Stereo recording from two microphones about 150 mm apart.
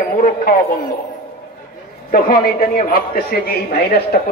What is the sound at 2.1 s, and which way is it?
A man's voice, 70° left (ahead or behind).